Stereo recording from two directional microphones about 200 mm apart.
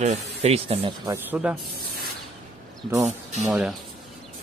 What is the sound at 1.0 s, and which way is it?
Speech, 10° right (ahead or behind).